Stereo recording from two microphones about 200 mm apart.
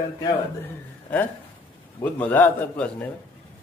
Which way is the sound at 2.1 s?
10° left (ahead or behind).